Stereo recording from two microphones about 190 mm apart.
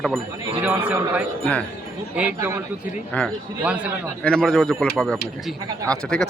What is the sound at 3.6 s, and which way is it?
Speech, 5° right (ahead or behind).